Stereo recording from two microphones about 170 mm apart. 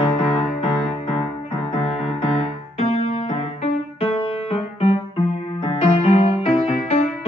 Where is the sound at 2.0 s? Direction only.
30° left (ahead or behind).